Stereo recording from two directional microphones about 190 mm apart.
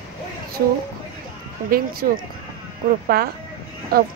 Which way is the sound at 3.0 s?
55° right (ahead or behind).